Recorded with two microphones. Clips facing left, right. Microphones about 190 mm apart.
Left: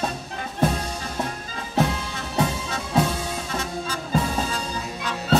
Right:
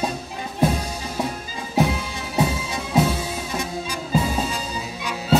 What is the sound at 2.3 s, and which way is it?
Music, 10° right (ahead or behind).